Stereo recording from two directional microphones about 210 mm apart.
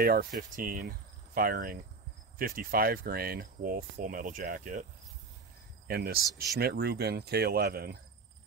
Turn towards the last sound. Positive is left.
turn(degrees=-45)  # may be behind; listen again after turning